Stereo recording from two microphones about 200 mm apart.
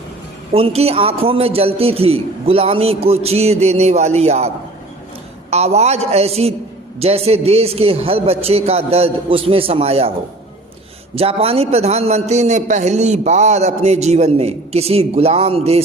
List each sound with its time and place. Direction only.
0.5 s a man's voice: 30° right (ahead or behind)
11.1 s a man's voice: 30° right (ahead or behind)